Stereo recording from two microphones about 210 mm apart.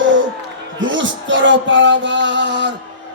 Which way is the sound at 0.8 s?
60° right (ahead or behind).